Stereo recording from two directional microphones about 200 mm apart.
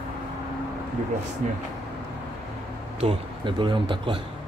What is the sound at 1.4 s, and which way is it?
Speech, 40° right (ahead or behind).